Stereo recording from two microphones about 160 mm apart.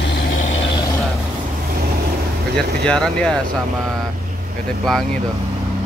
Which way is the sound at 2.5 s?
5° left (ahead or behind).